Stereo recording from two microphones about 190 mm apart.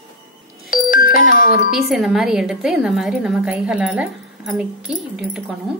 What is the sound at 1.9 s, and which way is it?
A woman's voice, 5° right (ahead or behind).